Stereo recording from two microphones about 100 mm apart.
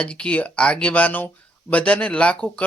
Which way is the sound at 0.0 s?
10° left (ahead or behind).